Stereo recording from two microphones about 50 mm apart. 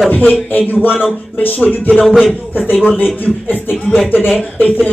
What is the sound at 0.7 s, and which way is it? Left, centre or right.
Speech, left.